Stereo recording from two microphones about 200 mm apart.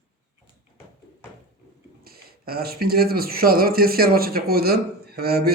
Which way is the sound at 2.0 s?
50° right (ahead or behind).